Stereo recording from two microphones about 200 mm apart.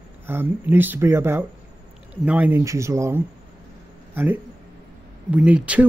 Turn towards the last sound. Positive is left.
turn(degrees=-5)  # may be behind; listen again after turning